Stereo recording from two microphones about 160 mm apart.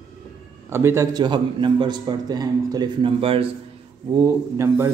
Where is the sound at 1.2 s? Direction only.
30° right (ahead or behind).